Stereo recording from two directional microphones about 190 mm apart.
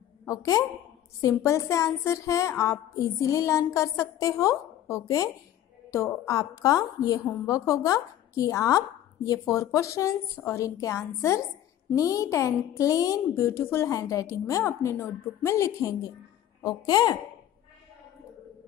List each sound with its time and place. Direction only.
0.2 s a woman's voice: 15° left (ahead or behind)